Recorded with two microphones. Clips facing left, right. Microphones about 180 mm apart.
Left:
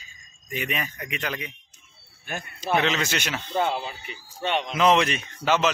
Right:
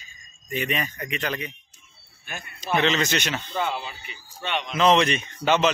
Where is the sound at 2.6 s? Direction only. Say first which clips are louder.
Right 1 dB; 5° left (ahead or behind).